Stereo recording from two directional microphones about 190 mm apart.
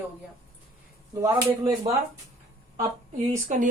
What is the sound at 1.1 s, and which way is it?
Speech, 15° right (ahead or behind).